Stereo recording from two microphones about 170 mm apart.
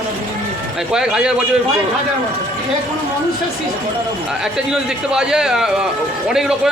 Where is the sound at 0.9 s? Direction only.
5° right (ahead or behind).